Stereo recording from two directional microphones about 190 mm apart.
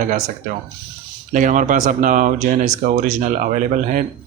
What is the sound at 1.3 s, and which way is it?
Speech, 40° right (ahead or behind).